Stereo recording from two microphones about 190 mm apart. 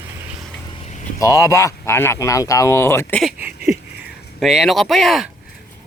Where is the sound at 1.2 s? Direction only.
15° left (ahead or behind).